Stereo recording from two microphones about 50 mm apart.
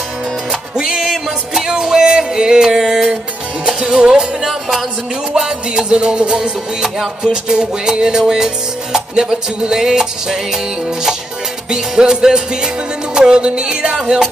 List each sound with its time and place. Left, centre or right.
0.5 s music: centre
11.7 s music: centre